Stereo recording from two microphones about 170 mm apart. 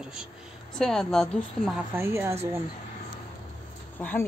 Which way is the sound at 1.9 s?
15° right (ahead or behind).